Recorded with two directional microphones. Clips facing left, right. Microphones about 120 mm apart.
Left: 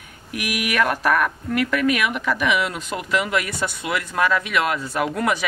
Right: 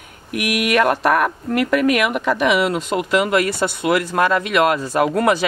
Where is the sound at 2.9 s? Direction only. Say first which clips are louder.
Right 8 dB; 45° right (ahead or behind).